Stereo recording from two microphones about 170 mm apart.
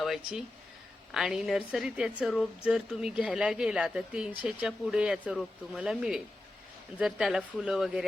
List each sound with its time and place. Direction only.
0.0 s speech: centre (ahead or behind)